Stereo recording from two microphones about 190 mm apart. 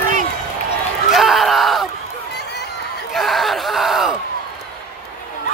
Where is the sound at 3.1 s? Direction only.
Centre (ahead or behind).